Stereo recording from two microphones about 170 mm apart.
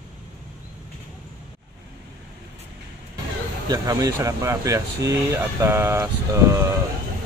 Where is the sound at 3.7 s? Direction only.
20° right (ahead or behind).